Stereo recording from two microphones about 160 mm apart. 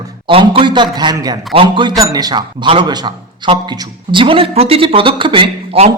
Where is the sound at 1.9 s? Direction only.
20° right (ahead or behind).